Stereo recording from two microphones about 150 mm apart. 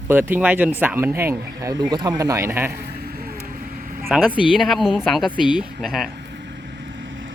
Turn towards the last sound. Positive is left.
turn(degrees=0)  # may be behind; listen again after turning